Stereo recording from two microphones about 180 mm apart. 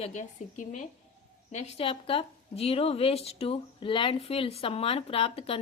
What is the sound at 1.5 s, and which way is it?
A woman's voice, 35° left (ahead or behind).